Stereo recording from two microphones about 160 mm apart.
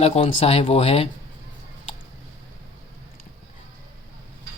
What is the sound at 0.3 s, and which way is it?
Speech, 40° left (ahead or behind).